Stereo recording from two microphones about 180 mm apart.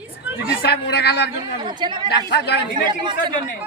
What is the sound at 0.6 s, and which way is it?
Speech, 65° left (ahead or behind).